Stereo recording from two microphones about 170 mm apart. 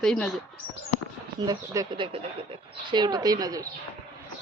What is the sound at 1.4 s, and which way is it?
Speech, 20° right (ahead or behind).